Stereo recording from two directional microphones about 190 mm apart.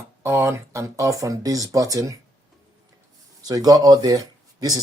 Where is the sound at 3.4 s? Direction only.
20° right (ahead or behind).